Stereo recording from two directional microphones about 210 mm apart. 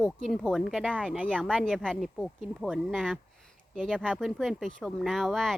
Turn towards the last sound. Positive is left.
turn(degrees=0)  # may be behind; listen again after turning